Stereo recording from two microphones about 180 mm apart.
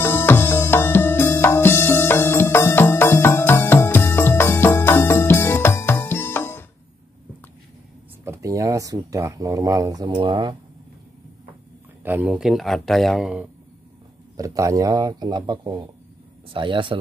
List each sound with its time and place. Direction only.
0.0 s music: 10° left (ahead or behind)
8.3 s speech: 15° right (ahead or behind)
12.0 s speech: 10° right (ahead or behind)
14.3 s a man's voice: 20° right (ahead or behind)